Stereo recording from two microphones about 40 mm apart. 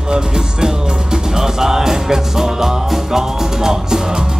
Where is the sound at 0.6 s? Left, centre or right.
Centre.